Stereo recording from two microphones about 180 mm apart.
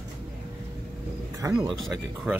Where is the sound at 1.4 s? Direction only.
20° right (ahead or behind).